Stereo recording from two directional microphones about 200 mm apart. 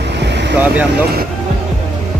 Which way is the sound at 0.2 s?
60° right (ahead or behind).